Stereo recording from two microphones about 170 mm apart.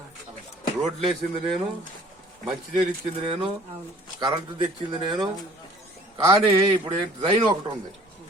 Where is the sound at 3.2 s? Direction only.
30° right (ahead or behind).